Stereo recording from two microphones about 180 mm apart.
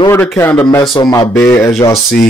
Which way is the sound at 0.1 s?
10° left (ahead or behind).